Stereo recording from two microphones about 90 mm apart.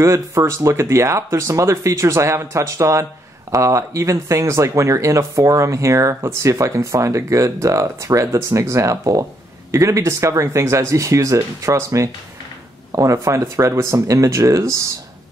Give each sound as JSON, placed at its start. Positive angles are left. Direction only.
{"t": 0.0, "sound": "speech", "side_deg": -30}